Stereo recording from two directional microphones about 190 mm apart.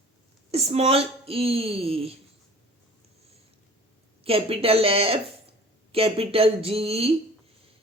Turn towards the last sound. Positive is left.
turn(degrees=-30)  # may be behind; listen again after turning